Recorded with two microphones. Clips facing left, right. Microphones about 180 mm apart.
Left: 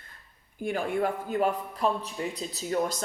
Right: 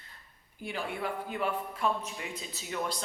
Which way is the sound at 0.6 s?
45° left (ahead or behind).